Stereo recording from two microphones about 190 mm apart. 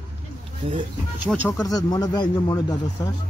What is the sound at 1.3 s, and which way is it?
Speech, 15° left (ahead or behind).